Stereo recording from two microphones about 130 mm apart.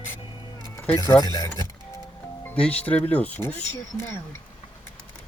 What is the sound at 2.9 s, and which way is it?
Speech, 10° left (ahead or behind).